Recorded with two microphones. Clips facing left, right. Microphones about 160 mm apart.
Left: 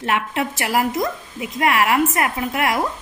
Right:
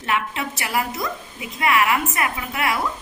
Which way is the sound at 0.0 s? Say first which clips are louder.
Left 3 dB; 65° left (ahead or behind).